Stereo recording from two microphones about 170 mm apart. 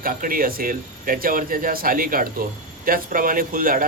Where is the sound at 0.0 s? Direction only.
55° right (ahead or behind).